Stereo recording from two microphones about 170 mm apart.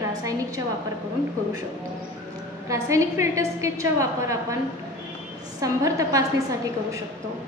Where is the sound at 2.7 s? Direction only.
15° right (ahead or behind).